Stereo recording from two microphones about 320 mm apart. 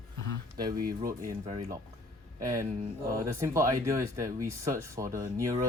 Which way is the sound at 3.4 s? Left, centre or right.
Centre.